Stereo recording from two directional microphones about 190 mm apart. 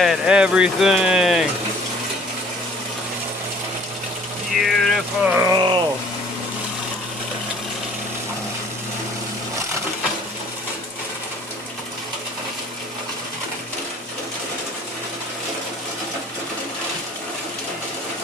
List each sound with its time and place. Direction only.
0.0 s speech: 5° right (ahead or behind)
4.5 s speech: centre (ahead or behind)
5.5 s a sound: 25° right (ahead or behind)